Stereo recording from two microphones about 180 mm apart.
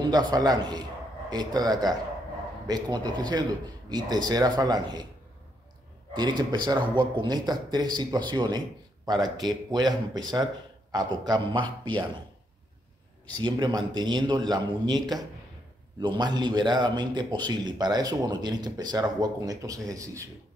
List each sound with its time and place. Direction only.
0.0 s a man's voice: 20° right (ahead or behind)
6.1 s a man's voice: 25° right (ahead or behind)
13.4 s a man's voice: 25° right (ahead or behind)
16.0 s a man's voice: 25° right (ahead or behind)